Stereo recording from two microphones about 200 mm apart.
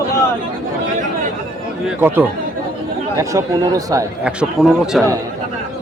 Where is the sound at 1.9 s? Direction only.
10° right (ahead or behind).